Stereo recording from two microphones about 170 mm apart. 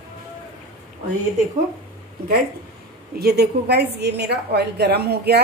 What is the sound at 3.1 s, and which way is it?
A woman's voice, 70° right (ahead or behind).